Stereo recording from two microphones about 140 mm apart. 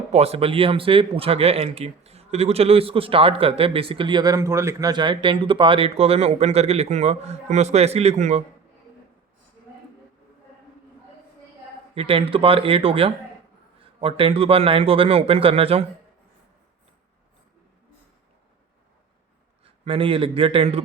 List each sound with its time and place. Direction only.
0.1 s speech: 45° right (ahead or behind)
11.9 s speech: 40° right (ahead or behind)
19.6 s a man's voice: 40° right (ahead or behind)